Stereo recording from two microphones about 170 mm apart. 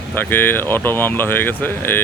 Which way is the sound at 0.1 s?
10° left (ahead or behind).